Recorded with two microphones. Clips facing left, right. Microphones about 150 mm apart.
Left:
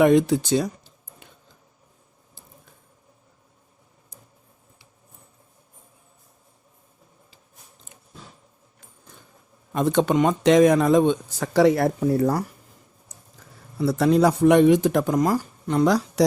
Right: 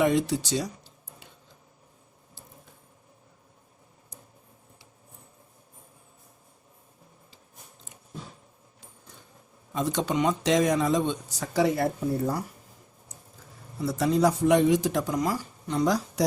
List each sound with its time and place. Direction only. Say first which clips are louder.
0.0 s speech: left 7 dB; 55° left (ahead or behind)
9.7 s speech: left 7 dB; 55° left (ahead or behind); by 12.5 s 85° left
13.7 s speech: left 6 dB; 65° left (ahead or behind)